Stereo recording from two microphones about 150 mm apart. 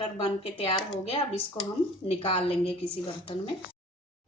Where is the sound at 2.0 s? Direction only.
40° left (ahead or behind).